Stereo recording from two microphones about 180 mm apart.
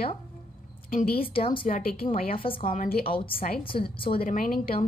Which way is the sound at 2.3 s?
30° left (ahead or behind).